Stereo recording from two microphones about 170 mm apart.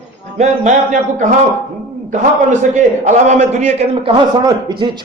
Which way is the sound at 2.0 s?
45° right (ahead or behind).